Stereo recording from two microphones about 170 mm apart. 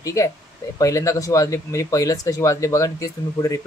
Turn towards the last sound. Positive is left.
turn(degrees=20)  # may be behind; listen again after turning